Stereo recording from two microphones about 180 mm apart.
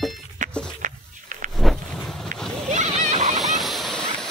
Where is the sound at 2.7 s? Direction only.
40° right (ahead or behind).